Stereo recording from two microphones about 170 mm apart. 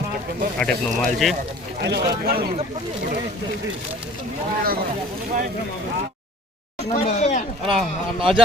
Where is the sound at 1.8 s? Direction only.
75° right (ahead or behind).